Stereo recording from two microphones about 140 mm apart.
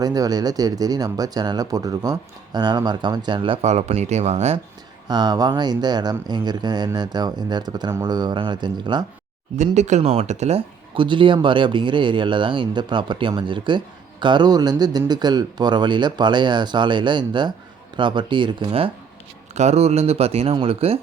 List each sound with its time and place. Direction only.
0.0 s speech: 25° right (ahead or behind); by 4.6 s 50° right (ahead or behind)
5.0 s speech: 30° right (ahead or behind)
9.7 s speech: 55° right (ahead or behind)
10.9 s speech: 35° right (ahead or behind)
19.5 s speech: 50° right (ahead or behind)